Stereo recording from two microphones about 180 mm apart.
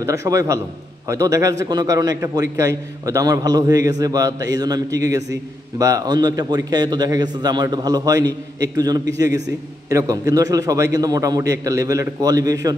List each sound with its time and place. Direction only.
0.0 s a man's voice: 15° right (ahead or behind)